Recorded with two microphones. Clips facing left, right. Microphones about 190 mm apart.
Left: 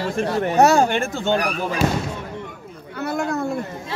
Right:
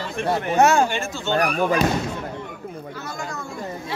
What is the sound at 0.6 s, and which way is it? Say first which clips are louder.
Speech: left 2 dB; 40° left (ahead or behind).